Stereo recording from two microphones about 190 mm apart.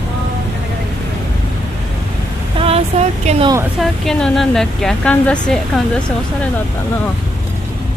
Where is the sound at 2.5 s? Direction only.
30° right (ahead or behind).